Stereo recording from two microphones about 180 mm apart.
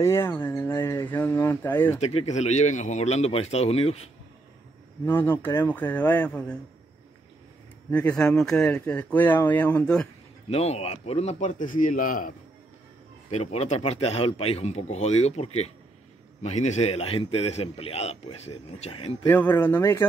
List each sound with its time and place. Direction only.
0.0 s speech: 15° left (ahead or behind)
2.0 s a man's voice: 35° left (ahead or behind)
5.0 s speech: 10° left (ahead or behind)
7.9 s speech: 10° left (ahead or behind)
10.5 s speech: 35° left (ahead or behind)
13.3 s a man's voice: 35° left (ahead or behind)
19.2 s speech: 10° left (ahead or behind)